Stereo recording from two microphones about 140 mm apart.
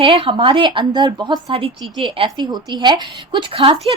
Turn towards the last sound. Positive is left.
turn(degrees=-40)  # may be behind; listen again after turning